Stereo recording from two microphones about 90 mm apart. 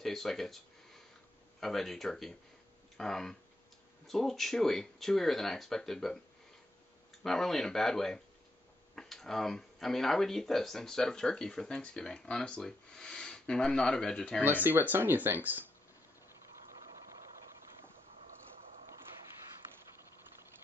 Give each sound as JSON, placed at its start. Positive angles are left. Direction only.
{"t": 0.0, "sound": "speech", "side_deg": 5}
{"t": 7.2, "sound": "speech", "side_deg": 5}
{"t": 14.4, "sound": "speech", "side_deg": -20}